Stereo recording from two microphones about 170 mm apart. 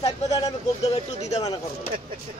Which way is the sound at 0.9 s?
40° left (ahead or behind).